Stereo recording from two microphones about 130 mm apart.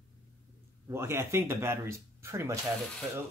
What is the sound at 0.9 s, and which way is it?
Speech, 20° right (ahead or behind).